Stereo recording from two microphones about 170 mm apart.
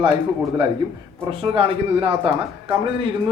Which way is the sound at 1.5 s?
35° right (ahead or behind).